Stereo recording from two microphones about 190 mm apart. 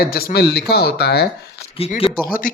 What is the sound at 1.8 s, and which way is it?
Speech, 30° left (ahead or behind).